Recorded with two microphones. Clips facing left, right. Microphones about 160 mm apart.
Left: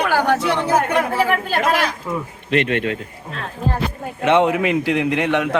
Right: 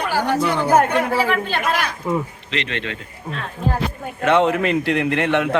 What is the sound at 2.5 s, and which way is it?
Speech, 50° left (ahead or behind).